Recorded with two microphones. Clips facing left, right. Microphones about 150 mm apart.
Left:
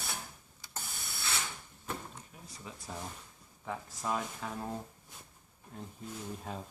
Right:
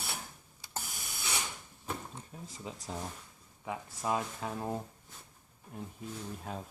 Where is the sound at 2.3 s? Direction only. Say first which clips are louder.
Right 6 dB; 35° right (ahead or behind).